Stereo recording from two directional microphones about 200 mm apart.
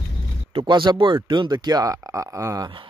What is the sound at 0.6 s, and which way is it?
Speech, 20° right (ahead or behind).